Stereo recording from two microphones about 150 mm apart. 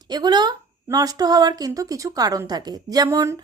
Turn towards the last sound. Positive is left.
turn(degrees=-20)  # may be behind; listen again after turning